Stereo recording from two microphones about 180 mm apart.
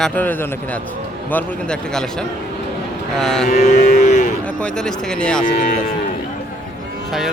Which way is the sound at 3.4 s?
40° left (ahead or behind).